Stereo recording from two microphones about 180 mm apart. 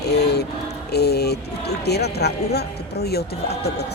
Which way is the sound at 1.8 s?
65° left (ahead or behind).